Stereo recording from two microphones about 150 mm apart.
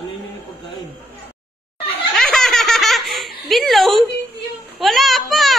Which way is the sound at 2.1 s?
Centre (ahead or behind).